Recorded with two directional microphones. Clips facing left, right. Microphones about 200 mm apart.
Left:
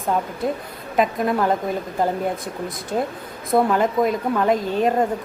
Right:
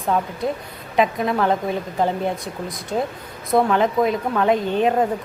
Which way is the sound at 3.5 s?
Centre (ahead or behind).